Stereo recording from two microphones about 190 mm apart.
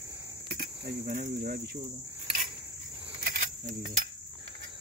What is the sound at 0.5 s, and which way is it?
Cricket, 55° right (ahead or behind).